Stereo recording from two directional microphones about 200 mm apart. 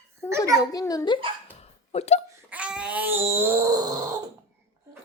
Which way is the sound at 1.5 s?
30° left (ahead or behind).